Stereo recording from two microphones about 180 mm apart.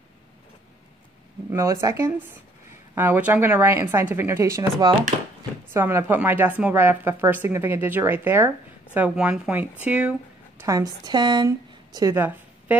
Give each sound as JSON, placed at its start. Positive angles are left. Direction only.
{"t": 1.5, "sound": "a woman's voice", "side_deg": -15}
{"t": 10.6, "sound": "speech", "side_deg": -20}